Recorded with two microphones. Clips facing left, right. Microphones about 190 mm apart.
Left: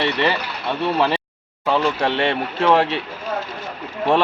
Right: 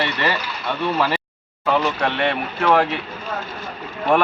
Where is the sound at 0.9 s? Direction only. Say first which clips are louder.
Left 2 dB; 25° left (ahead or behind).